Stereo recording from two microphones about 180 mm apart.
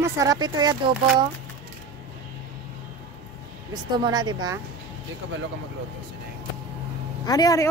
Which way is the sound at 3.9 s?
25° right (ahead or behind).